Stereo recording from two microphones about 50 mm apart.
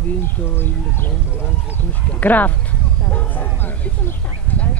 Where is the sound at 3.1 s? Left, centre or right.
Left.